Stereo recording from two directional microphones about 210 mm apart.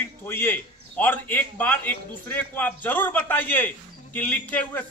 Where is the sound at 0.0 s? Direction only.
10° left (ahead or behind).